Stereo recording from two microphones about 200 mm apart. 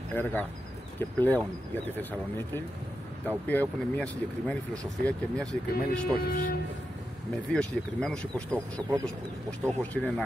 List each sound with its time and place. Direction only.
0.1 s speech: 10° left (ahead or behind)
6.2 s speech: 40° left (ahead or behind)
7.5 s speech: 5° left (ahead or behind)